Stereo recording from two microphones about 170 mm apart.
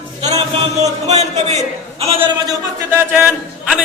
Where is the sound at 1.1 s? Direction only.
40° right (ahead or behind).